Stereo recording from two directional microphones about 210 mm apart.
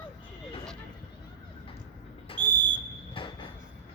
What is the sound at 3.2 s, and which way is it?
Train, 25° left (ahead or behind).